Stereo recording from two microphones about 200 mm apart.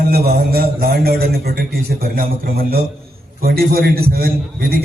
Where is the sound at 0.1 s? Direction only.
50° right (ahead or behind).